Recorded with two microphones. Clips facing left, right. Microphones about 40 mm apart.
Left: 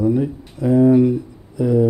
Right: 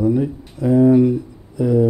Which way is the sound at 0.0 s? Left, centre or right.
Centre.